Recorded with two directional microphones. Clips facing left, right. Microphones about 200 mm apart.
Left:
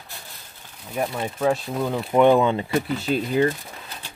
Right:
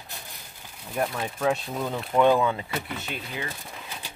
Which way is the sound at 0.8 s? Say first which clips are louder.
Left 2 dB; 5° left (ahead or behind).